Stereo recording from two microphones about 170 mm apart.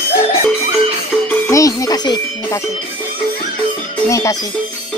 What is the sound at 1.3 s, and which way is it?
Music, 20° left (ahead or behind).